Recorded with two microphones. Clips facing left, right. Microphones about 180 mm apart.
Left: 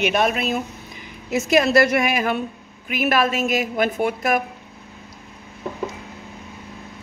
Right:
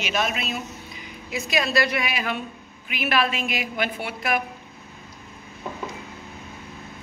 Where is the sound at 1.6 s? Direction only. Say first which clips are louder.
Left 7 dB; 45° left (ahead or behind).